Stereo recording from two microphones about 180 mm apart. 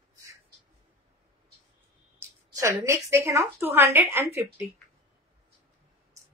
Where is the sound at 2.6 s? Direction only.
15° right (ahead or behind).